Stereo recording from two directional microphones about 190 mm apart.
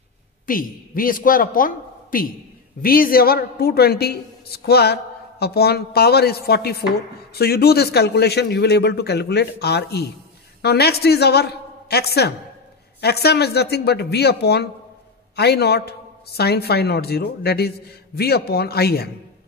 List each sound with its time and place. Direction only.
0.5 s a man's voice: 50° left (ahead or behind)